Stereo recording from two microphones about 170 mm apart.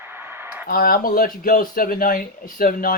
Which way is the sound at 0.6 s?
60° left (ahead or behind).